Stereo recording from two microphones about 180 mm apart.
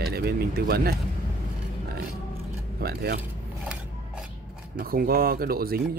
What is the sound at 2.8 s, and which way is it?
Speech, 60° right (ahead or behind).